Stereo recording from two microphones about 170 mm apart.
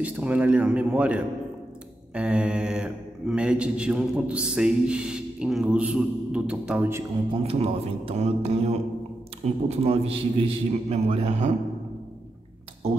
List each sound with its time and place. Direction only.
0.0 s a man's voice: 10° right (ahead or behind)
7.3 s a man's voice: 35° right (ahead or behind)